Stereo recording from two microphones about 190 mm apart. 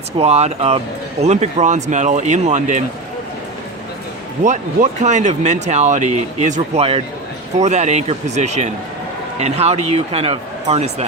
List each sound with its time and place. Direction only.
0.2 s speech: 35° right (ahead or behind)
4.4 s speech: 40° right (ahead or behind)